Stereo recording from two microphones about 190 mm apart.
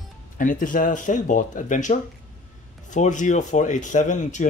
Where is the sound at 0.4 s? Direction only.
45° left (ahead or behind).